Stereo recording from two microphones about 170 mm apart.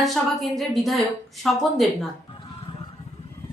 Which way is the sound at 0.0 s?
Centre (ahead or behind).